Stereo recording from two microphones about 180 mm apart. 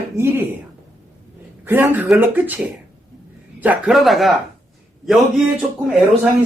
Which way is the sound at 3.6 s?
5° right (ahead or behind).